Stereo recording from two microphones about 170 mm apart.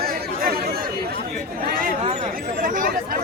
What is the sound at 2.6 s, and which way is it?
Chatter, 55° right (ahead or behind).